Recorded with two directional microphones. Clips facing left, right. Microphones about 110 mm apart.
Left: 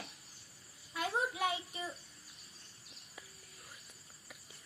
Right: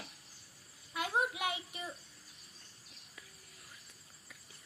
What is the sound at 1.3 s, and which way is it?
Child singing, 15° right (ahead or behind).